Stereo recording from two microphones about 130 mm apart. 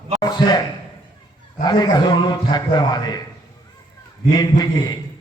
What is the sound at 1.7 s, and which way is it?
A man's voice, 30° left (ahead or behind).